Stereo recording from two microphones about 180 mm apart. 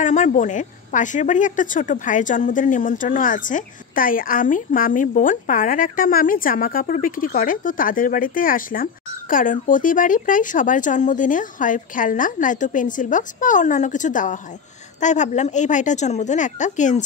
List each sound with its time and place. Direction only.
0.0 s a woman's voice: 45° left (ahead or behind)